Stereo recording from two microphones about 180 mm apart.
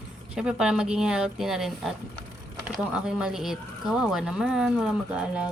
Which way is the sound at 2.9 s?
5° right (ahead or behind).